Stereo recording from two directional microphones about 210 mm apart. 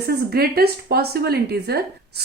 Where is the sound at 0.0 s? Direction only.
45° right (ahead or behind).